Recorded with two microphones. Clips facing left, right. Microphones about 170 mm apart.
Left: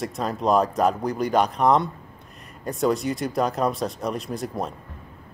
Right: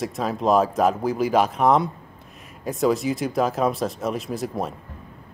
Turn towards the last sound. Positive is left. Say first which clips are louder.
# right 2 dB
turn(degrees=0)  # may be behind; listen again after turning